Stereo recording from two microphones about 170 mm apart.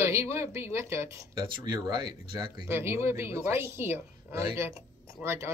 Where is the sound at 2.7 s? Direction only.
15° right (ahead or behind).